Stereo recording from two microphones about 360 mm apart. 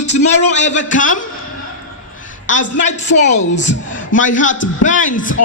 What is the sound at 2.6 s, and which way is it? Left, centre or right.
A woman's voice, left.